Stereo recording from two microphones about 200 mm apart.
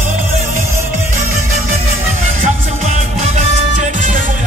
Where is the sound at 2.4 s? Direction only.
35° right (ahead or behind).